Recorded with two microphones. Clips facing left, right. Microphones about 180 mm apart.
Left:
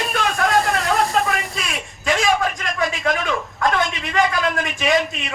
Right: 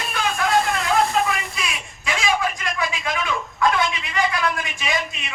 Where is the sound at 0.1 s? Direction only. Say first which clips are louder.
Even; 45° left (ahead or behind).